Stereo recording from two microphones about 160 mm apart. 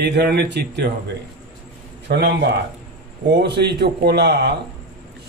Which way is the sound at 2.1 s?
90° right.